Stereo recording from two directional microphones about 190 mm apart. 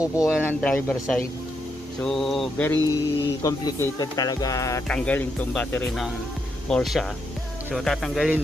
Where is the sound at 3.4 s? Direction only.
20° left (ahead or behind).